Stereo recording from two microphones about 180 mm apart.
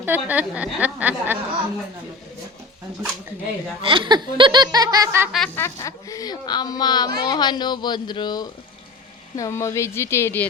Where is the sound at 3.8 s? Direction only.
30° right (ahead or behind).